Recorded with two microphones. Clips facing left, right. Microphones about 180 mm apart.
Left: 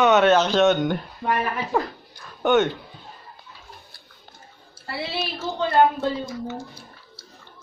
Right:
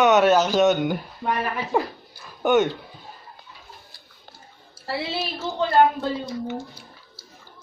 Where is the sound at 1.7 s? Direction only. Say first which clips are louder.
Right 1 dB; 10° right (ahead or behind).